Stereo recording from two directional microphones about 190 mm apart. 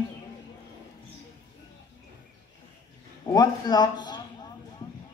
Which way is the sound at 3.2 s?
20° left (ahead or behind).